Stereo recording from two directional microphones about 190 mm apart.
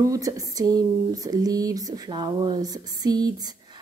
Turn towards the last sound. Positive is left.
turn(degrees=-20)  # may be behind; listen again after turning